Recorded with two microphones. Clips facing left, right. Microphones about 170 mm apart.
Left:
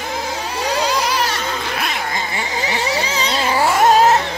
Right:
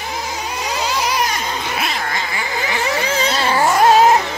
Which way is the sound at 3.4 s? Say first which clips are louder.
Right 1 dB; 10° left (ahead or behind).